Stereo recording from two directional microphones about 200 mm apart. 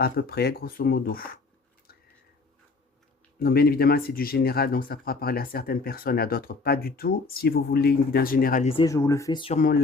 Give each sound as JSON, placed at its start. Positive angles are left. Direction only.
{"t": 0.0, "sound": "speech", "side_deg": 50}
{"t": 3.3, "sound": "speech", "side_deg": 50}
{"t": 8.7, "sound": "speech", "side_deg": 20}